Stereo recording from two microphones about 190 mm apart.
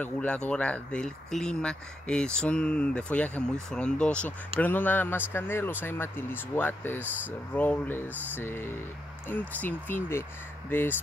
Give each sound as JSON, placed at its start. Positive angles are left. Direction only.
{"t": 0.0, "sound": "speech", "side_deg": 5}